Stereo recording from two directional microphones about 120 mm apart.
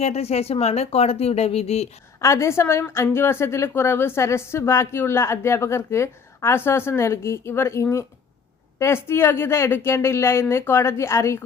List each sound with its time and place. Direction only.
0.0 s speech: 60° left (ahead or behind)
2.2 s a woman's voice: 25° left (ahead or behind)